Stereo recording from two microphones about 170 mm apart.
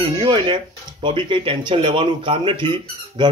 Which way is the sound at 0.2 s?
30° right (ahead or behind).